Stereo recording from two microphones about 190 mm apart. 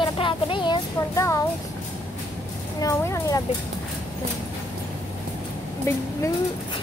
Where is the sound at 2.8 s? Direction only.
15° left (ahead or behind).